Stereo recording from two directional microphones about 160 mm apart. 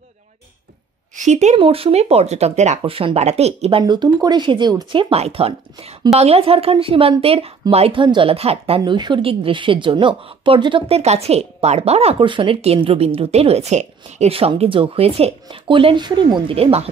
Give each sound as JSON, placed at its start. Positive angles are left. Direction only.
{"t": 1.1, "sound": "speech", "side_deg": -50}
{"t": 1.6, "sound": "a woman's voice", "side_deg": -35}
{"t": 2.8, "sound": "a woman's voice", "side_deg": -35}
{"t": 3.8, "sound": "a woman's voice", "side_deg": -25}